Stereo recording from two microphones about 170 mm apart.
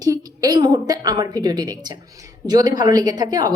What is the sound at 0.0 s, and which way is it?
A woman's voice, 20° right (ahead or behind).